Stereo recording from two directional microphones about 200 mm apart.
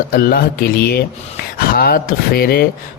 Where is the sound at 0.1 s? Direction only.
45° left (ahead or behind).